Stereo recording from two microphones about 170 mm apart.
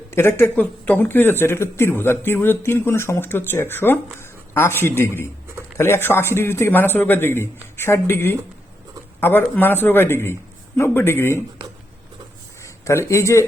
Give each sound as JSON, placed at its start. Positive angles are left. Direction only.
{"t": 0.1, "sound": "speech", "side_deg": 15}
{"t": 12.6, "sound": "speech", "side_deg": 15}